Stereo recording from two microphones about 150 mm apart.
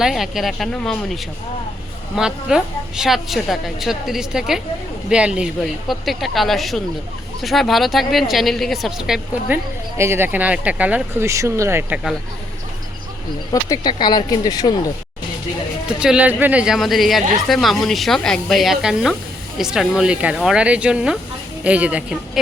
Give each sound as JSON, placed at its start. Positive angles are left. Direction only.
{"t": 0.0, "sound": "a woman's voice", "side_deg": 0}
{"t": 10.0, "sound": "speech", "side_deg": -15}
{"t": 13.5, "sound": "speech", "side_deg": 25}
{"t": 16.0, "sound": "a woman's voice", "side_deg": -5}